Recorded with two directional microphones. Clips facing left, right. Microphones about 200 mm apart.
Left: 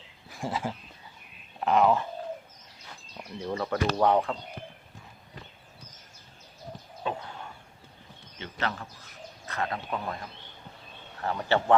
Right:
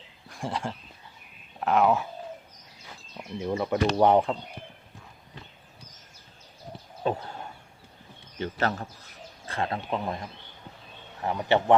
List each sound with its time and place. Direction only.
0.3 s a sound: centre (ahead or behind)
1.6 s speech: centre (ahead or behind)
3.3 s speech: 20° right (ahead or behind)
7.1 s a man's voice: 40° right (ahead or behind)
8.4 s a man's voice: 40° right (ahead or behind)
9.5 s speech: 30° right (ahead or behind)